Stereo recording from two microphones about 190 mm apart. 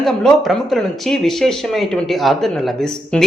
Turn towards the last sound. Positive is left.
turn(degrees=0)  # may be behind; listen again after turning